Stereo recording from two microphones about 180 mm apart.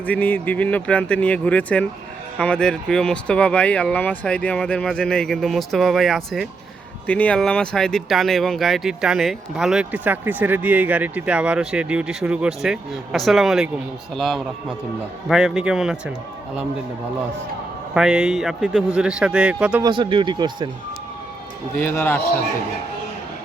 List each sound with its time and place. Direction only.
0.0 s speech: 10° left (ahead or behind)
17.9 s speech: 5° right (ahead or behind)
19.8 s speech: 25° right (ahead or behind)
21.8 s speech: 10° left (ahead or behind)